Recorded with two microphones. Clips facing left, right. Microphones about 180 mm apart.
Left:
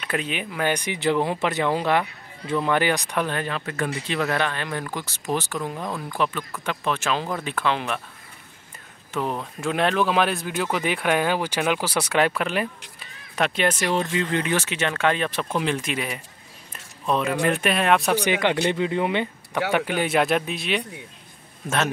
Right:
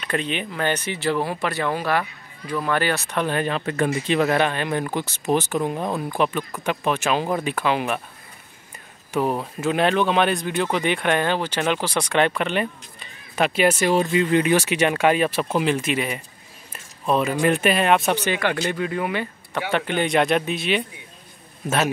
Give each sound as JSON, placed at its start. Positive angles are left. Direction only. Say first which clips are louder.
{"t": 0.0, "sound": "speech", "louder": "right 2 dB", "side_deg": 5}
{"t": 3.3, "sound": "speech", "louder": "right 4 dB", "side_deg": -20}
{"t": 9.1, "sound": "speech", "louder": "right 4 dB", "side_deg": -10}
{"t": 16.7, "sound": "a sound", "louder": "right 3 dB", "side_deg": -5}
{"t": 17.5, "sound": "speech", "louder": "right 2 dB", "side_deg": 0}
{"t": 18.1, "sound": "speech", "louder": "left 1 dB", "side_deg": 15}
{"t": 19.7, "sound": "speech", "louder": "right 2 dB", "side_deg": 10}